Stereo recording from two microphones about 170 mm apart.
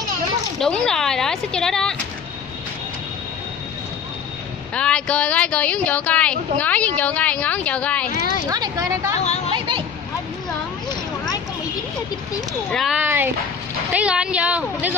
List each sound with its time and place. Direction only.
0.6 s speech: 5° left (ahead or behind)
4.7 s speech: 5° left (ahead or behind)
8.5 s speech: 20° right (ahead or behind)
9.2 s music: 40° left (ahead or behind)
12.7 s a sound: centre (ahead or behind)
13.0 s a sound: 10° right (ahead or behind)
13.9 s a woman's voice: 5° right (ahead or behind)